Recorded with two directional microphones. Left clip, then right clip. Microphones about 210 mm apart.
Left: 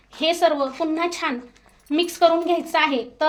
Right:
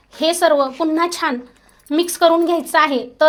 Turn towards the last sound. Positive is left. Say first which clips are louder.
# right 6 dB
turn(degrees=-35)  # may be behind; listen again after turning